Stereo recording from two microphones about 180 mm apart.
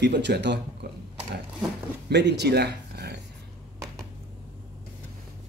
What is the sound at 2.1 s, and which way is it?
Speech, 70° right (ahead or behind).